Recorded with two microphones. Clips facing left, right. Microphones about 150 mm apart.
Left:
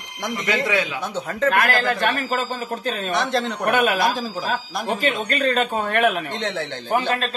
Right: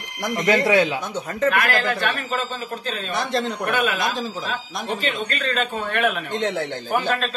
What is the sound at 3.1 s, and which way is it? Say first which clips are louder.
Speech: even; centre (ahead or behind).